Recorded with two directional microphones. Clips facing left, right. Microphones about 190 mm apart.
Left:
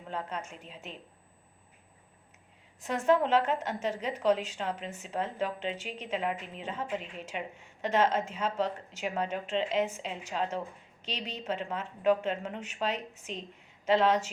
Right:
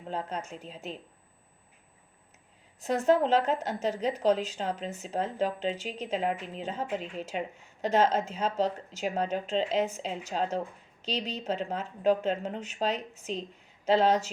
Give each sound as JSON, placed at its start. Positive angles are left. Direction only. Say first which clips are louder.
{"t": 0.1, "sound": "a woman's voice", "louder": "right 3 dB", "side_deg": -35}
{"t": 2.8, "sound": "a woman's voice", "louder": "right 2 dB", "side_deg": -40}